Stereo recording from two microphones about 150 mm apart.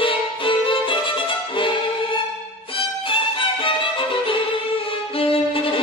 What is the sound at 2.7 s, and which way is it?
Violin, 35° left (ahead or behind).